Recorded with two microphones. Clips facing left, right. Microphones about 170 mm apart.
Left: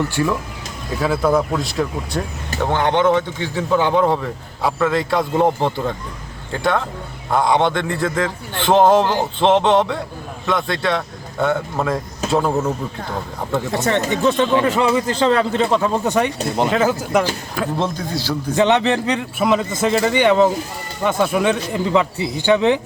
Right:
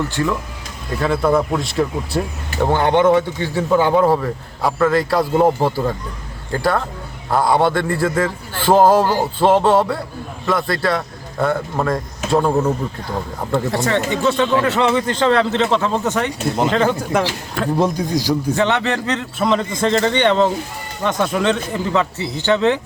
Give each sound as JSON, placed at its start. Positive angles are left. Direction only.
{"t": 0.2, "sound": "speech", "side_deg": 20}
{"t": 0.9, "sound": "a man's voice", "side_deg": 5}
{"t": 14.1, "sound": "speech", "side_deg": 20}
{"t": 14.7, "sound": "speech", "side_deg": 10}
{"t": 16.6, "sound": "a man's voice", "side_deg": 5}
{"t": 17.7, "sound": "speech", "side_deg": -15}
{"t": 18.5, "sound": "speech", "side_deg": 20}